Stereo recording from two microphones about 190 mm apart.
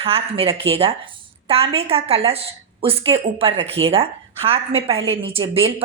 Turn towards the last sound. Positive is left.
turn(degrees=-30)  # may be behind; listen again after turning